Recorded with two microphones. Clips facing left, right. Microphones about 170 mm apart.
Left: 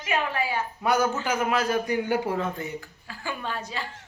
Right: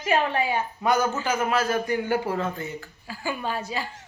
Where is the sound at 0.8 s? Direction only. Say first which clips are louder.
Even; 5° left (ahead or behind).